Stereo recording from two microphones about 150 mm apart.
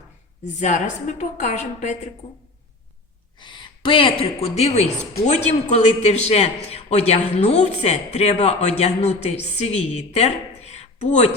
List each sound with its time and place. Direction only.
0.4 s speech: 55° left (ahead or behind)
3.3 s a woman's voice: 30° left (ahead or behind); by 11.3 s 50° left (ahead or behind)